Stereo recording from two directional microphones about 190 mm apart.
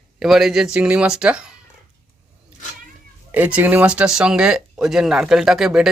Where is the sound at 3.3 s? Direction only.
10° right (ahead or behind).